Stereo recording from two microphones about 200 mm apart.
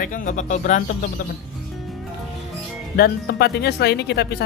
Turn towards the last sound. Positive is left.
turn(degrees=55)  # may be behind; listen again after turning